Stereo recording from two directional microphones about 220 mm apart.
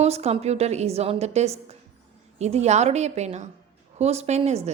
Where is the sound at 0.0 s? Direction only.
30° right (ahead or behind).